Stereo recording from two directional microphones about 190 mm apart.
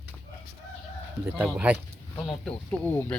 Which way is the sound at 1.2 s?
10° right (ahead or behind).